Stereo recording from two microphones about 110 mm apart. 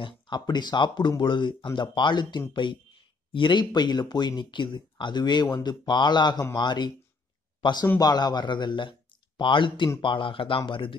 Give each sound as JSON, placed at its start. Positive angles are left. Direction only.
{"t": 0.0, "sound": "speech", "side_deg": 40}